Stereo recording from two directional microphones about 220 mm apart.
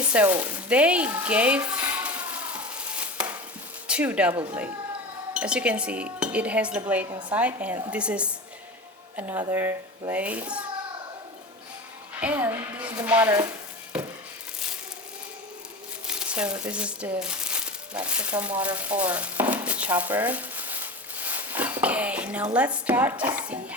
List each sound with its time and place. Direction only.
0.0 s speech: 5° right (ahead or behind)
1.9 s a sound: 5° right (ahead or behind)
3.8 s speech: 5° right (ahead or behind)
9.3 s speech: 10° right (ahead or behind)
12.2 s music: 10° right (ahead or behind)
12.9 s chopping: 20° right (ahead or behind)
13.1 s speech: 10° right (ahead or behind)
16.0 s crumpling: 5° right (ahead or behind)
22.5 s speech: 5° right (ahead or behind)